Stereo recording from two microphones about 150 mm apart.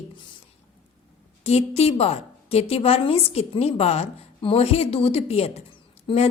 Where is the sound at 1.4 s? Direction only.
45° left (ahead or behind).